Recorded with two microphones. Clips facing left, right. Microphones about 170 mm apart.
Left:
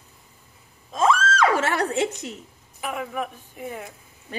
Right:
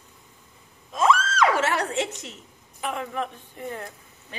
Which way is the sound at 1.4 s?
45° left (ahead or behind).